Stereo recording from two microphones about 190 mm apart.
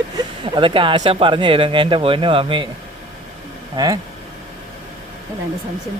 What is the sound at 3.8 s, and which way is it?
Speech, 20° right (ahead or behind).